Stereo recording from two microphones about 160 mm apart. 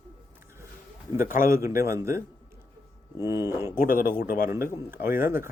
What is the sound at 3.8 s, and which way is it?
Speech, 60° left (ahead or behind).